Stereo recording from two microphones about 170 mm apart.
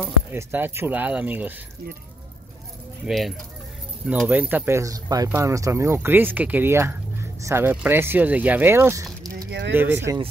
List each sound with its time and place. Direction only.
0.0 s speech: 10° right (ahead or behind)
3.1 s speech: centre (ahead or behind); by 9.5 s 20° right (ahead or behind)
9.5 s speech: 85° right
9.8 s speech: 15° right (ahead or behind)